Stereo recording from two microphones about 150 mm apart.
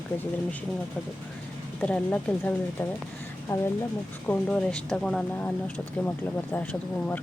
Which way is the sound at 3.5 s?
15° left (ahead or behind).